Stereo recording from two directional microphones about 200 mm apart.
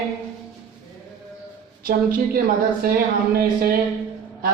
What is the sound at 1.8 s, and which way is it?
A man's voice, 45° right (ahead or behind).